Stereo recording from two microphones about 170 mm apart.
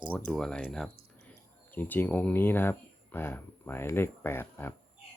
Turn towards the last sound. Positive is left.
turn(degrees=15)  # may be behind; listen again after turning